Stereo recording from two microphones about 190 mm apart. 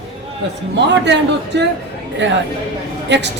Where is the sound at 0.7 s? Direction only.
65° right (ahead or behind).